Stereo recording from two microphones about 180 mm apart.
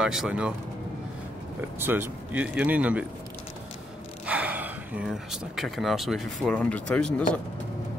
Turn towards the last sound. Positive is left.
turn(degrees=5)  # may be behind; listen again after turning